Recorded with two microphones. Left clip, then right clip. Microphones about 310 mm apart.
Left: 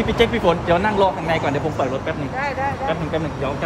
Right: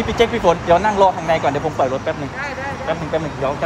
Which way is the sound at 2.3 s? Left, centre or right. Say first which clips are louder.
Left 3 dB; left.